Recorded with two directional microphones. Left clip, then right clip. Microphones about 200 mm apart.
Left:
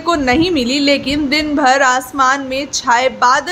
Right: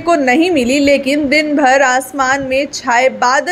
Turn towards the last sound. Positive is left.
turn(degrees=-10)  # may be behind; listen again after turning